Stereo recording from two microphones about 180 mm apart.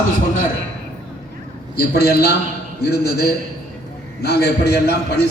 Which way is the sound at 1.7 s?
60° left (ahead or behind).